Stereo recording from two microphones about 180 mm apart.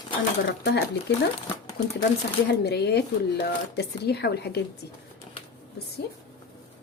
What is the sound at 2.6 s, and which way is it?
Speech, 65° left (ahead or behind).